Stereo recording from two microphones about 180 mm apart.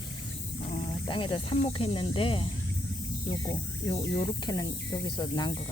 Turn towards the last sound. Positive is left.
turn(degrees=25)  # may be behind; listen again after turning